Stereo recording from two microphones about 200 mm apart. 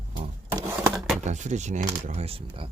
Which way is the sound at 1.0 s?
Centre (ahead or behind).